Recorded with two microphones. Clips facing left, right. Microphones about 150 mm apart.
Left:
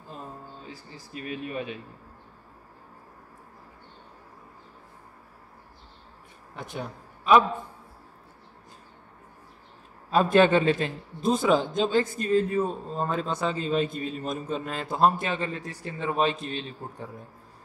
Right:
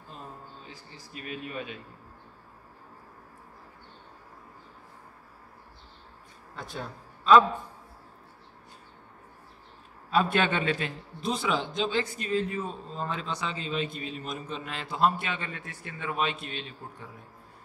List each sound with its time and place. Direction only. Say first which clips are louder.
1.1 s speech: left 4 dB; 30° left (ahead or behind)
6.5 s a man's voice: left 3 dB; 20° left (ahead or behind)
10.1 s a man's voice: left 6 dB; 40° left (ahead or behind)
11.1 s a man's voice: left 7 dB; 45° left (ahead or behind)